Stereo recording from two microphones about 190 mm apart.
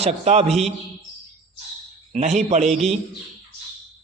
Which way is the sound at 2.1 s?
35° right (ahead or behind).